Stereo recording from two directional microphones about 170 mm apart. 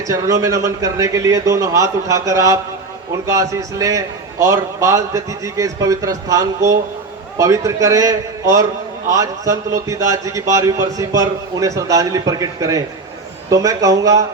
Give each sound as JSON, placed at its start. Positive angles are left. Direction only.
{"t": 0.0, "sound": "a man's voice", "side_deg": -20}